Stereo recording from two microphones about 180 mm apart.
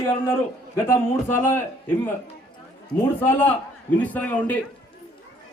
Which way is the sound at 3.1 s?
10° left (ahead or behind).